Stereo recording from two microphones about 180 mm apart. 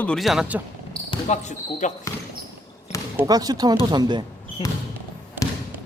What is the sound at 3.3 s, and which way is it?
Speech, 20° right (ahead or behind).